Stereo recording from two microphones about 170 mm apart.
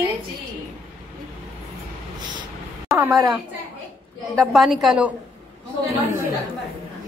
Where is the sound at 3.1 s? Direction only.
Centre (ahead or behind).